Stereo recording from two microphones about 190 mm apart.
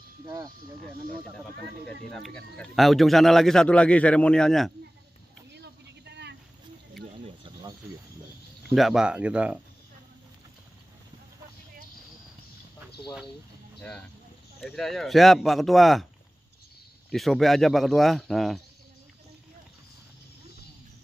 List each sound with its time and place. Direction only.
2.1 s speech: 5° left (ahead or behind)
5.5 s vehicle: 60° right (ahead or behind)
8.6 s speech: centre (ahead or behind)
14.6 s speech: centre (ahead or behind)
17.1 s speech: centre (ahead or behind)